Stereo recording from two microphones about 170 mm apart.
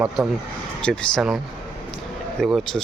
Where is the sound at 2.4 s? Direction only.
Centre (ahead or behind).